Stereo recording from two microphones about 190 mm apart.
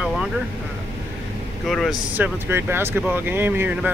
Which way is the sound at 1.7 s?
Centre (ahead or behind).